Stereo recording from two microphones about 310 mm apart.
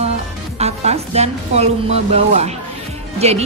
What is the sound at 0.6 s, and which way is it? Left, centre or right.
A woman's voice, right.